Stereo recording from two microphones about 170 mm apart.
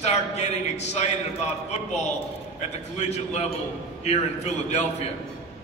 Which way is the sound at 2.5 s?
40° left (ahead or behind).